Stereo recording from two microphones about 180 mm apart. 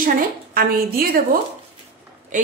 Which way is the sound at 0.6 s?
55° right (ahead or behind).